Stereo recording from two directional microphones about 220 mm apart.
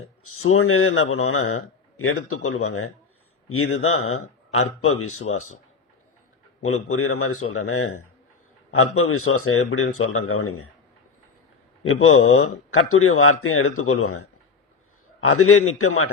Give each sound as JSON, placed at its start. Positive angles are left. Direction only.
{"t": 0.3, "sound": "a man's voice", "side_deg": 75}
{"t": 6.6, "sound": "a man's voice", "side_deg": 80}
{"t": 11.8, "sound": "a man's voice", "side_deg": 75}
{"t": 15.3, "sound": "a man's voice", "side_deg": 80}